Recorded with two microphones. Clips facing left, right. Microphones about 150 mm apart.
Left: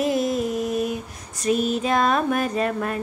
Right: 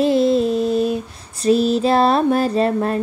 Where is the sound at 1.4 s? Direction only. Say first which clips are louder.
Right 6 dB; 30° right (ahead or behind).